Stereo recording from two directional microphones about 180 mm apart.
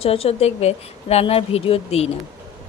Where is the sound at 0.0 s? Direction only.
35° left (ahead or behind).